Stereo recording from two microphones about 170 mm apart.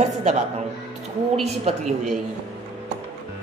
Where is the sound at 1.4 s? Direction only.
40° right (ahead or behind).